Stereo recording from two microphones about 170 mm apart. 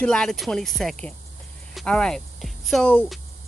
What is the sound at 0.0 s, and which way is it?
Speech, 5° left (ahead or behind).